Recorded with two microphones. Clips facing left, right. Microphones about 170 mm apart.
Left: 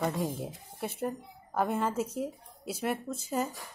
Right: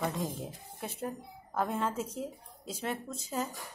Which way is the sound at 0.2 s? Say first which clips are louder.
Left 3 dB; 60° left (ahead or behind).